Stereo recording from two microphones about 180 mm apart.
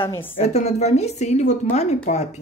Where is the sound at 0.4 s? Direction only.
35° left (ahead or behind).